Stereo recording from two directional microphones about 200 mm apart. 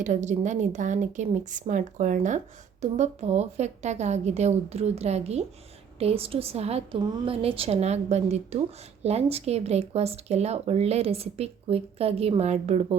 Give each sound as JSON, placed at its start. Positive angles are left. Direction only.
{"t": 0.0, "sound": "a woman's voice", "side_deg": -35}